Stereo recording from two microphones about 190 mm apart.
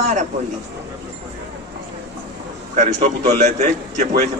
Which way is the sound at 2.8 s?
40° right (ahead or behind).